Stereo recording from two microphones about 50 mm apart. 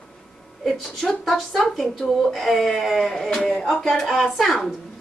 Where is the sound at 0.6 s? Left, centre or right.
Centre.